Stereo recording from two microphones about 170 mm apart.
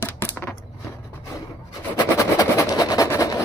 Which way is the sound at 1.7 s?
20° left (ahead or behind).